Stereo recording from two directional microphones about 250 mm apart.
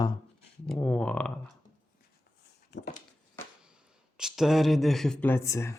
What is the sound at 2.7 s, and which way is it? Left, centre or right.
Dog, left.